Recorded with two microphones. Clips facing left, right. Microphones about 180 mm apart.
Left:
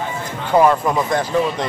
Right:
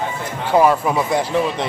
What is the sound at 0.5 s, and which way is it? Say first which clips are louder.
Speech: left 1 dB; 5° right (ahead or behind).